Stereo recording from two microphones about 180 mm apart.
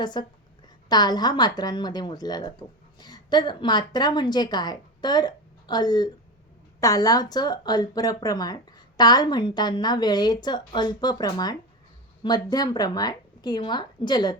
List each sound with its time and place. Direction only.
0.0 s a woman's voice: 25° left (ahead or behind)